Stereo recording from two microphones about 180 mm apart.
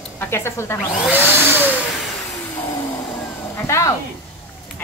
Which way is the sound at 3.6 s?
15° left (ahead or behind).